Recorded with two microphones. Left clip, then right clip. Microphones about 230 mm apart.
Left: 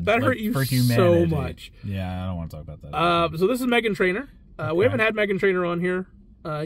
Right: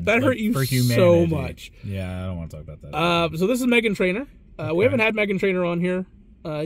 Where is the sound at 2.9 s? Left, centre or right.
Centre.